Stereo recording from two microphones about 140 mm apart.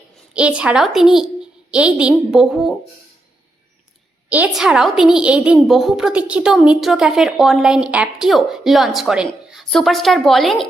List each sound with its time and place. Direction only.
0.3 s a woman's voice: 10° right (ahead or behind)
4.3 s a woman's voice: 5° right (ahead or behind)